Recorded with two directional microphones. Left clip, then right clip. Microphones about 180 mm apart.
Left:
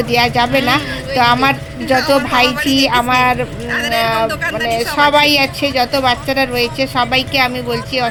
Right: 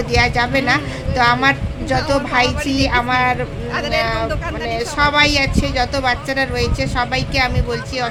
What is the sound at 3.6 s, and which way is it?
Speech, 5° right (ahead or behind).